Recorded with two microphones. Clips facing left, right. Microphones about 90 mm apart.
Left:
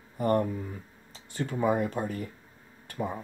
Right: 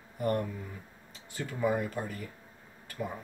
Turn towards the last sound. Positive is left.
turn(degrees=30)  # may be behind; listen again after turning